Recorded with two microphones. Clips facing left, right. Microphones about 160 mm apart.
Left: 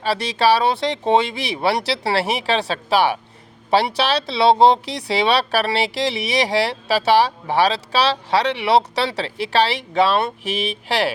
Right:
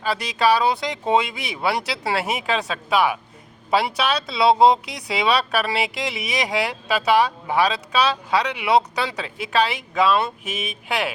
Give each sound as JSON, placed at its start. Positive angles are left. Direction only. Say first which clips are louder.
{"t": 0.0, "sound": "speech", "louder": "left 2 dB", "side_deg": 30}